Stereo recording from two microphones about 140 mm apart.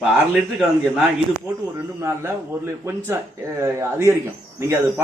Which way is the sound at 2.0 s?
20° right (ahead or behind).